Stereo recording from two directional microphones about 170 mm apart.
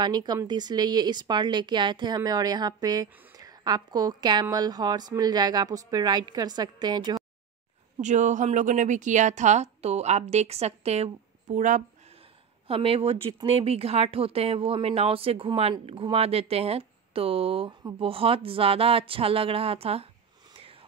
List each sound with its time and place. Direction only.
0.0 s speech: 25° right (ahead or behind)
8.0 s a woman's voice: 45° right (ahead or behind)
12.6 s speech: 35° right (ahead or behind)